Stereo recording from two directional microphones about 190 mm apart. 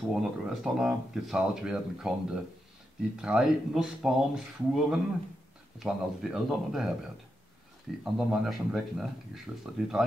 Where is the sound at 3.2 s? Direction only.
5° right (ahead or behind).